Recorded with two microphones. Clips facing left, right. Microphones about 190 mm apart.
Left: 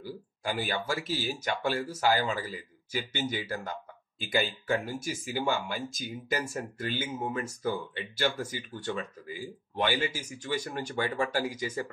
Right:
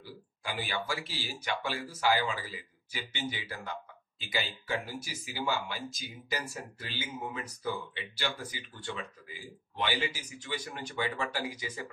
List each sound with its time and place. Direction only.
0.0 s speech: 45° left (ahead or behind)